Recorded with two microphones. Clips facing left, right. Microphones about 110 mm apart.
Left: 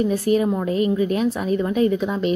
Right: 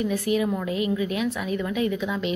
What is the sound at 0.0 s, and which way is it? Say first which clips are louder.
A woman's voice: left 5 dB; 35° left (ahead or behind).